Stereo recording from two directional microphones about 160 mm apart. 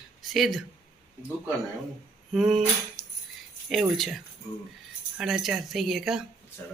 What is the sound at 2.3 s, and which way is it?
Speech, centre (ahead or behind).